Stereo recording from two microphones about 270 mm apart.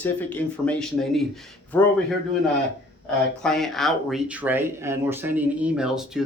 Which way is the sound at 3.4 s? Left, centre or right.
Centre.